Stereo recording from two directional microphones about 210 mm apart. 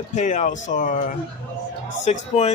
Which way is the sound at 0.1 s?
35° left (ahead or behind).